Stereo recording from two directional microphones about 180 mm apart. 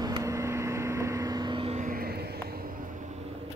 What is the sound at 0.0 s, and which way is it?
Vehicle, 20° right (ahead or behind).